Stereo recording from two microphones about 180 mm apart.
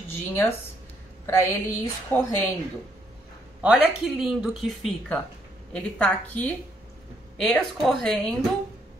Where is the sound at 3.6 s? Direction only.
5° right (ahead or behind).